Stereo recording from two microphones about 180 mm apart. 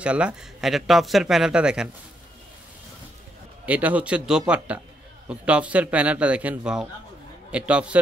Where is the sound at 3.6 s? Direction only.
10° right (ahead or behind).